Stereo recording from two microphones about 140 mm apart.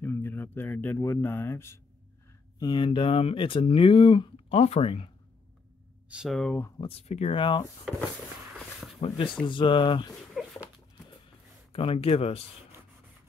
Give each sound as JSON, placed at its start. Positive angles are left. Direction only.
{"t": 0.0, "sound": "speech", "side_deg": 15}
{"t": 2.6, "sound": "speech", "side_deg": 35}
{"t": 6.0, "sound": "speech", "side_deg": -5}
{"t": 6.8, "sound": "speech", "side_deg": 45}
{"t": 7.3, "sound": "speech", "side_deg": 35}
{"t": 9.0, "sound": "speech", "side_deg": 45}
{"t": 10.4, "sound": "a sound", "side_deg": 0}
{"t": 11.2, "sound": "a sound", "side_deg": 40}